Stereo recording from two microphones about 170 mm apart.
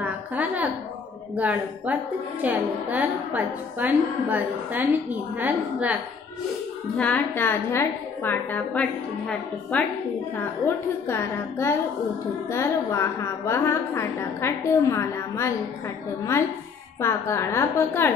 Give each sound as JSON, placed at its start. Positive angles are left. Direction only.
{"t": 0.0, "sound": "a sound", "side_deg": -10}
{"t": 1.3, "sound": "a woman's voice", "side_deg": -10}
{"t": 7.0, "sound": "a woman's voice", "side_deg": 10}
{"t": 11.1, "sound": "a woman's voice", "side_deg": 15}
{"t": 17.0, "sound": "a woman's voice", "side_deg": 15}